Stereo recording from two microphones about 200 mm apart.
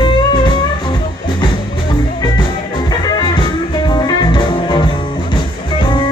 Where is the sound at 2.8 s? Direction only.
20° left (ahead or behind).